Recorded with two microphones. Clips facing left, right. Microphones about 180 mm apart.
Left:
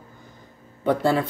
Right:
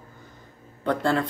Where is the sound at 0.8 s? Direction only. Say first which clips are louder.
Left 3 dB; 10° left (ahead or behind).